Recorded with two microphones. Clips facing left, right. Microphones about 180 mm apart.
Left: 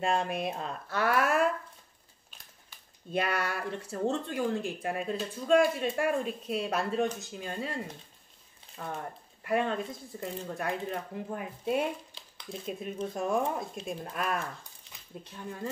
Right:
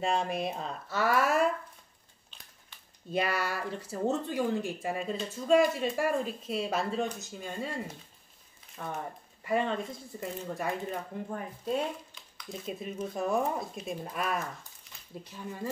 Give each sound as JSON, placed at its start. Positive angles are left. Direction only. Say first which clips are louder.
{"t": 0.0, "sound": "speech", "louder": "even", "side_deg": 0}
{"t": 3.1, "sound": "speech", "louder": "even", "side_deg": 0}
{"t": 12.2, "sound": "a sound", "louder": "left 1 dB", "side_deg": 30}
{"t": 12.6, "sound": "speech", "louder": "left 1 dB", "side_deg": 0}